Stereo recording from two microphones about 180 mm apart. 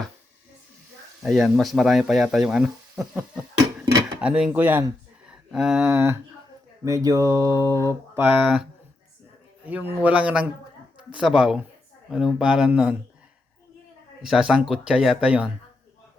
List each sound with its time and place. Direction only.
1.2 s speech: centre (ahead or behind)
6.8 s a sound: 20° right (ahead or behind)
9.6 s a man's voice: 10° right (ahead or behind)
14.3 s speech: 5° right (ahead or behind)